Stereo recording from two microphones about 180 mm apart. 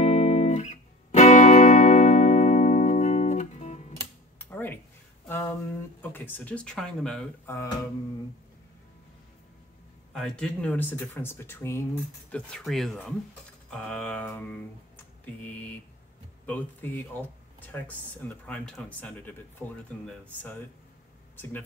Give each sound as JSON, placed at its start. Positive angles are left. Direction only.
{"t": 0.0, "sound": "music", "side_deg": 35}
{"t": 4.4, "sound": "a sound", "side_deg": 10}
{"t": 5.9, "sound": "speech", "side_deg": 10}
{"t": 10.1, "sound": "speech", "side_deg": 5}
{"t": 16.4, "sound": "speech", "side_deg": 10}
{"t": 21.4, "sound": "speech", "side_deg": 10}